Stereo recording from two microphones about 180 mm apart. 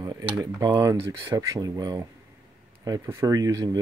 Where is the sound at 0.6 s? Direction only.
25° right (ahead or behind).